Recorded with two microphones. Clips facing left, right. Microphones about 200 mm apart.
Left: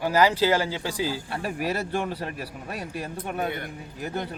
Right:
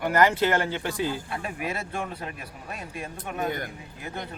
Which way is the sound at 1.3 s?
35° left (ahead or behind).